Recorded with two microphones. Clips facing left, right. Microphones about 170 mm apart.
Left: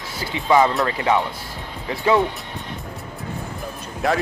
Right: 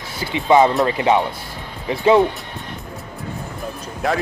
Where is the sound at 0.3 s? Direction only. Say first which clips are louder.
Right 3 dB; 20° right (ahead or behind).